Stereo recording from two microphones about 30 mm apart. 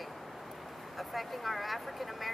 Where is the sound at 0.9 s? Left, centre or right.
Centre.